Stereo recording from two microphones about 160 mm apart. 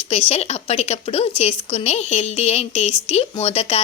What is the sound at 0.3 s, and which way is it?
Speech, 40° left (ahead or behind).